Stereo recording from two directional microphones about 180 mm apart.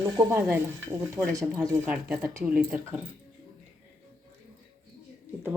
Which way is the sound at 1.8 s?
10° right (ahead or behind).